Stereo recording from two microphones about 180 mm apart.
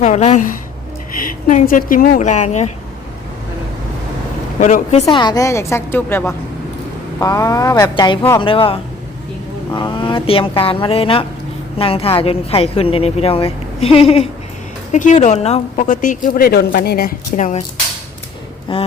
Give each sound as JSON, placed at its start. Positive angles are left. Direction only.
{"t": 0.0, "sound": "a woman's voice", "side_deg": 40}
{"t": 4.6, "sound": "speech", "side_deg": 40}
{"t": 5.0, "sound": "a woman's voice", "side_deg": 20}
{"t": 14.9, "sound": "a woman's voice", "side_deg": 40}
{"t": 18.7, "sound": "speech", "side_deg": 30}